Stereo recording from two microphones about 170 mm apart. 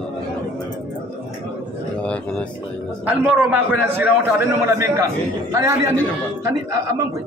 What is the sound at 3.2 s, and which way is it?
A man's voice, 5° right (ahead or behind).